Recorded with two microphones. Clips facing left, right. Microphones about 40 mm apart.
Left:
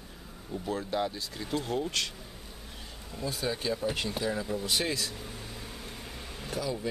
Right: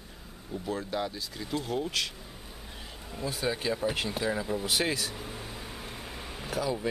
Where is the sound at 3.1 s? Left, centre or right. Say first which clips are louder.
Right 1 dB; centre.